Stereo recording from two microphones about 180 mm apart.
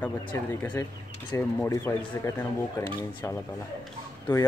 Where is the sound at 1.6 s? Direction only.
15° left (ahead or behind).